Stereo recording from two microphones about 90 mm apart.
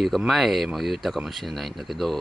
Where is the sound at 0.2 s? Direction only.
5° right (ahead or behind).